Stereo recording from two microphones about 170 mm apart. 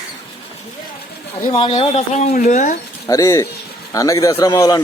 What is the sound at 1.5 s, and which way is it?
Speech, 30° left (ahead or behind).